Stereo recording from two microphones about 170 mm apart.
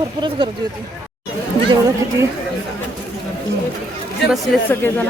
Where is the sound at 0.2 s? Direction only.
25° right (ahead or behind).